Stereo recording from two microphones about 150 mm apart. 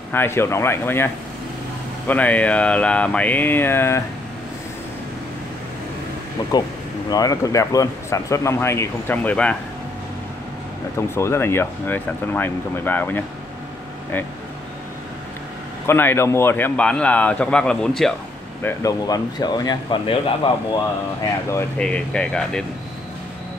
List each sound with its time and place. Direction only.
0.1 s a man's voice: 15° left (ahead or behind)
7.1 s speech: 25° left (ahead or behind); by 9.6 s 10° left (ahead or behind)
11.0 s a man's voice: 20° left (ahead or behind)
15.9 s a man's voice: 15° left (ahead or behind)
18.6 s speech: 20° left (ahead or behind); by 20.5 s 35° left (ahead or behind)
21.7 s speech: 5° left (ahead or behind)